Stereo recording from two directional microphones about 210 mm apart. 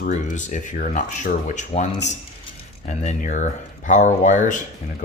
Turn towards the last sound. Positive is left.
turn(degrees=35)  # may be behind; listen again after turning